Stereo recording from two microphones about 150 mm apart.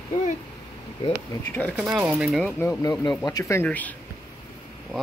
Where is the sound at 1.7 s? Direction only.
5° right (ahead or behind).